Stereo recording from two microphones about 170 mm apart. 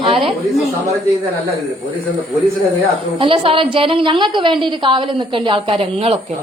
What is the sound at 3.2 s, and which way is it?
A woman's voice, 30° right (ahead or behind).